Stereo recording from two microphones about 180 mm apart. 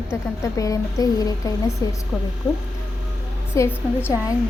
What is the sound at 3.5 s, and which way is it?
Speech, 15° left (ahead or behind).